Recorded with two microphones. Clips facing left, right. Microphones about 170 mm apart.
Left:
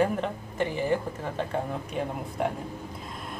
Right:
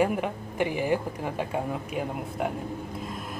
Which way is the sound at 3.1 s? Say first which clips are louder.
Right 2 dB; centre (ahead or behind).